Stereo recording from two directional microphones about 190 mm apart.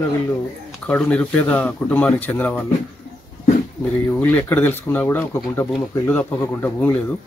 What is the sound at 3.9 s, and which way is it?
Speech, 10° left (ahead or behind).